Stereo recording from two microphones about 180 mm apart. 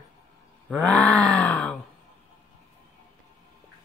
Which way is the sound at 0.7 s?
5° left (ahead or behind).